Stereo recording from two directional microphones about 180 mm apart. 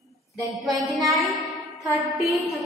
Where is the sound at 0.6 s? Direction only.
Centre (ahead or behind).